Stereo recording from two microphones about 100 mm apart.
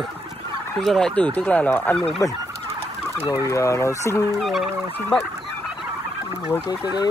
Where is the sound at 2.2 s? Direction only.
35° left (ahead or behind).